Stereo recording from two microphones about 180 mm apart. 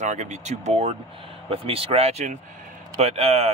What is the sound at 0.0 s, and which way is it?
Speech, 40° right (ahead or behind).